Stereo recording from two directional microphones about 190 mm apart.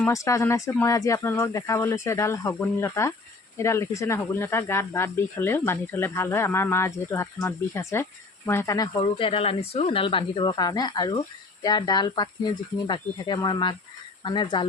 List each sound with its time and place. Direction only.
0.0 s speech: 15° left (ahead or behind)